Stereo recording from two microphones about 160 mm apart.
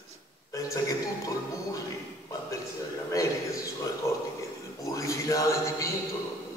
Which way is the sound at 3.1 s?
20° left (ahead or behind).